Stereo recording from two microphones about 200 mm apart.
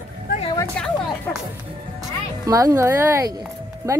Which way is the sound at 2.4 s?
15° right (ahead or behind).